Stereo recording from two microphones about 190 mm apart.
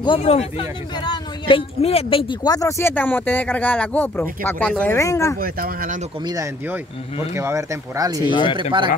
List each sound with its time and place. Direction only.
0.0 s speech: 30° left (ahead or behind)
5.4 s speech: 50° right (ahead or behind)
6.2 s speech: 15° right (ahead or behind)
8.3 s speech: 25° left (ahead or behind)